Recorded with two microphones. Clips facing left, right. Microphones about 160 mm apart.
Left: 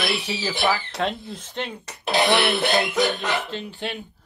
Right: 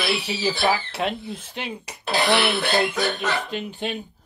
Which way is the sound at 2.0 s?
20° left (ahead or behind).